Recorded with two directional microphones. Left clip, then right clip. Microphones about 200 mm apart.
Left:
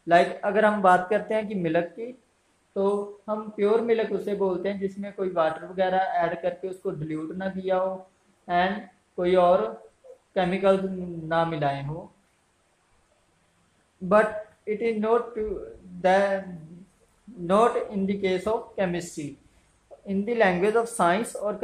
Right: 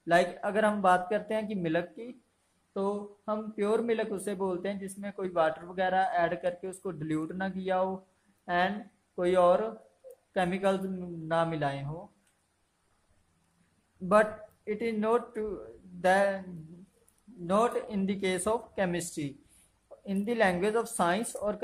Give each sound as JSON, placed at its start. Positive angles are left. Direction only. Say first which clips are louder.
{"t": 0.0, "sound": "speech", "louder": "left 6 dB", "side_deg": -15}
{"t": 14.0, "sound": "speech", "louder": "left 4 dB", "side_deg": -15}
{"t": 17.5, "sound": "speech", "louder": "left 6 dB", "side_deg": -10}